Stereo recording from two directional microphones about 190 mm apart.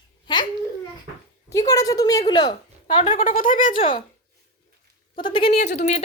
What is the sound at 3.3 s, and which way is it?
Speech, 45° left (ahead or behind).